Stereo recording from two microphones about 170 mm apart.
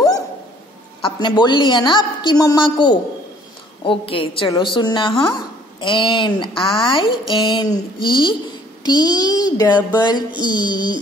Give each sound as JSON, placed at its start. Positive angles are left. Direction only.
{"t": 1.0, "sound": "a woman's voice", "side_deg": 25}